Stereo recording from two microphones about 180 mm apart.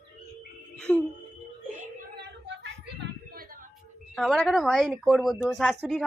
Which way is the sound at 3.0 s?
55° right (ahead or behind).